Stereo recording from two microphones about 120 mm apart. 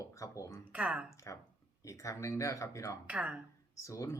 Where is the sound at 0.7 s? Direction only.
10° right (ahead or behind).